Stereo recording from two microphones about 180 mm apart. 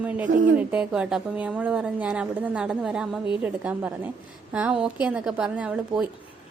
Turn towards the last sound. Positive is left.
turn(degrees=-5)  # may be behind; listen again after turning